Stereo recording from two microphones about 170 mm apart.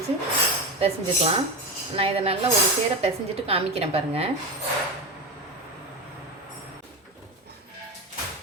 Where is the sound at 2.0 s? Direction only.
35° right (ahead or behind).